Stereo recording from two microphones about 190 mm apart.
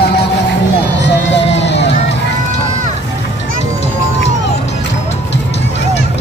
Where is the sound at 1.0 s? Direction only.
70° left (ahead or behind).